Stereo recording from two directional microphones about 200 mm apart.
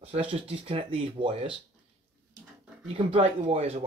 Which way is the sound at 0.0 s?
30° right (ahead or behind).